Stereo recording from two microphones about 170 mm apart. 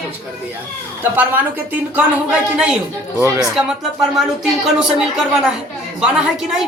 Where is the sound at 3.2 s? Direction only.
15° right (ahead or behind).